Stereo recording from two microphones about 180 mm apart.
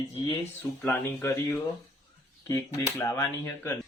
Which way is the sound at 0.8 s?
10° left (ahead or behind).